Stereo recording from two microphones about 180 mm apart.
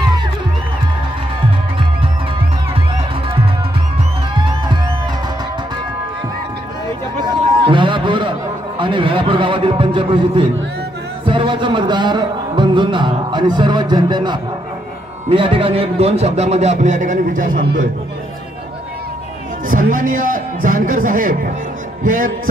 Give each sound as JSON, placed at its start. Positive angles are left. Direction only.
{"t": 7.2, "sound": "a sound", "side_deg": -25}
{"t": 11.2, "sound": "music", "side_deg": -25}
{"t": 15.2, "sound": "a man's voice", "side_deg": -30}
{"t": 19.7, "sound": "a man's voice", "side_deg": -50}